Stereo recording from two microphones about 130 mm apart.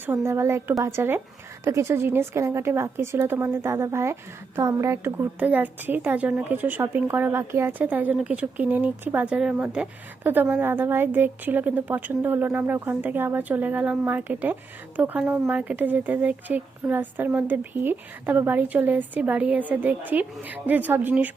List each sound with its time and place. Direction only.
0.3 s a woman's voice: 20° right (ahead or behind)